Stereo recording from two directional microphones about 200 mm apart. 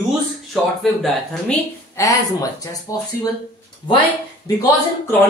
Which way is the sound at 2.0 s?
15° left (ahead or behind).